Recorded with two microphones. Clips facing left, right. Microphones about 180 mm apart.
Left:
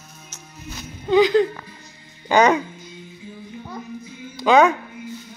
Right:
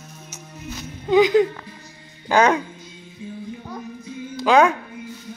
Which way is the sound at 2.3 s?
5° left (ahead or behind).